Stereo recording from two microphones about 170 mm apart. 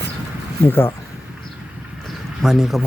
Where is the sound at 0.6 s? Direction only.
15° left (ahead or behind).